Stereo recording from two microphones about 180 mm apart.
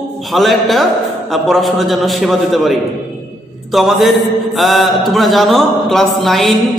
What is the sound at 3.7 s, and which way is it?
Speech, centre (ahead or behind).